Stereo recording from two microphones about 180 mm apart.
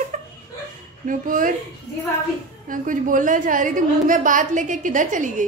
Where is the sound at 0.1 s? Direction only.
45° right (ahead or behind).